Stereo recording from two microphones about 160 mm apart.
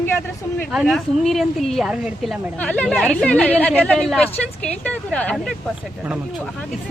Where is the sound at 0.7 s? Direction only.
Centre (ahead or behind).